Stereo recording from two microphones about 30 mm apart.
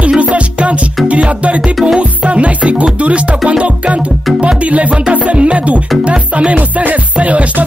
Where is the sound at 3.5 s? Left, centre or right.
Right.